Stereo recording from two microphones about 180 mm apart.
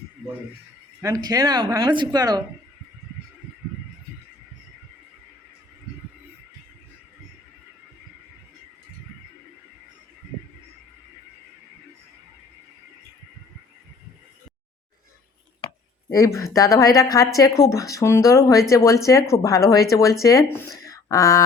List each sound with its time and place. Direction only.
1.0 s speech: 20° right (ahead or behind)
16.1 s speech: 15° left (ahead or behind)